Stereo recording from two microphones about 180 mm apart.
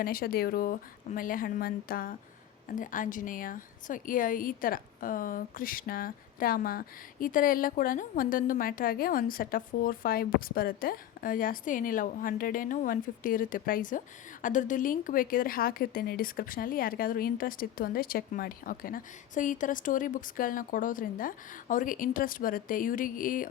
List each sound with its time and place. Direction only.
0.0 s a woman's voice: 55° left (ahead or behind)